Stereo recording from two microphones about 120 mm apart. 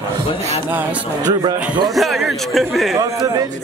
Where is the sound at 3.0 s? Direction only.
30° right (ahead or behind).